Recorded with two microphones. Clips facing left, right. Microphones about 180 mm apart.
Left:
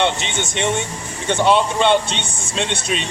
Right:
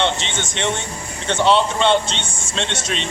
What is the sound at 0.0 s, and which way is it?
A man's voice, 15° left (ahead or behind).